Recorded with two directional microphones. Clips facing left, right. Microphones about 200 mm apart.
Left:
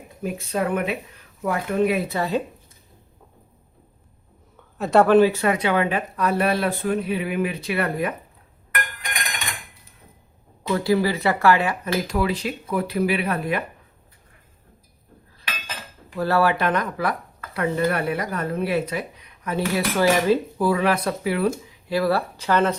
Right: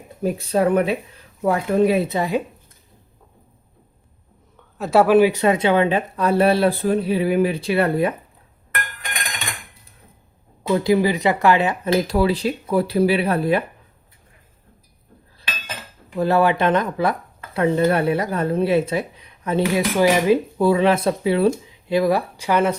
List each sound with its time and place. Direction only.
0.2 s speech: 35° right (ahead or behind)
2.1 s speech: 15° right (ahead or behind)
4.8 s speech: 5° right (ahead or behind); by 8.1 s 30° right (ahead or behind)
10.6 s speech: 20° right (ahead or behind)
12.0 s speech: 35° right (ahead or behind)
16.1 s speech: 20° right (ahead or behind)
19.6 s speech: 15° right (ahead or behind)